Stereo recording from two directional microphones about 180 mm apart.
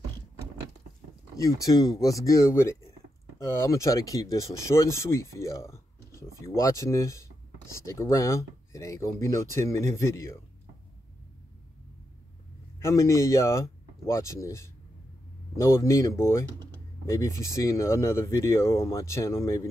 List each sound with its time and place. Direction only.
1.3 s speech: 20° left (ahead or behind)
12.7 s speech: 15° left (ahead or behind)